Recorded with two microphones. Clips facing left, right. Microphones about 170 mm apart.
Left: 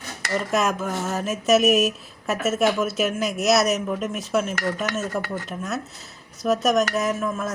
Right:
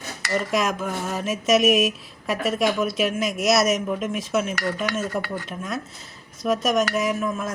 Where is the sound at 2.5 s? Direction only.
5° left (ahead or behind).